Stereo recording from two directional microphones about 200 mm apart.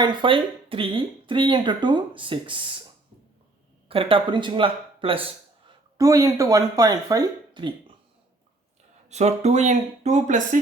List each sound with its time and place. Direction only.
0.0 s speech: 25° right (ahead or behind)
3.8 s speech: 25° right (ahead or behind)
9.0 s speech: 35° right (ahead or behind)